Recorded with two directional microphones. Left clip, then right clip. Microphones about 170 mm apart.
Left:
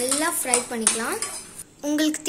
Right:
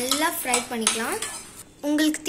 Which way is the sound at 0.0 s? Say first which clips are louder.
Right 1 dB; 5° left (ahead or behind).